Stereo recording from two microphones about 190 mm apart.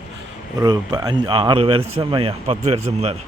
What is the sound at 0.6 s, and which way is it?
Speech, 20° right (ahead or behind).